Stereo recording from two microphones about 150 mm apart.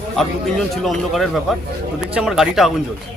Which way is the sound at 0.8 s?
Centre (ahead or behind).